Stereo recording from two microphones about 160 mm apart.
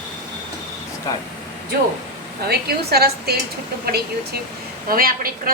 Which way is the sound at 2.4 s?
80° right.